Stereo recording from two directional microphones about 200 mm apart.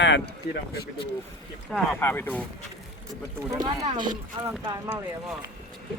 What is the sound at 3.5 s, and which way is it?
Speech, 20° right (ahead or behind).